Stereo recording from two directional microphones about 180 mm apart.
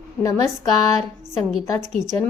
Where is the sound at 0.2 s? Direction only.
20° left (ahead or behind).